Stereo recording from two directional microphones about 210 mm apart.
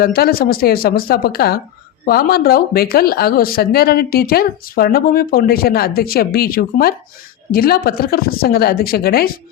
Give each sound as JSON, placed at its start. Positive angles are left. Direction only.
{"t": 0.0, "sound": "speech", "side_deg": 45}